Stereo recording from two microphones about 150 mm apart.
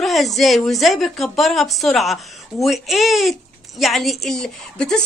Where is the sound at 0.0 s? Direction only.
Centre (ahead or behind).